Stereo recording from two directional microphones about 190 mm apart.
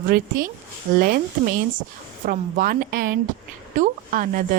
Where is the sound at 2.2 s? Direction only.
50° right (ahead or behind).